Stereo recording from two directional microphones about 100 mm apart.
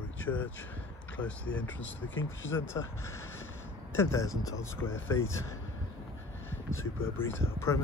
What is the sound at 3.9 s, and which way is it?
Speech, 30° left (ahead or behind).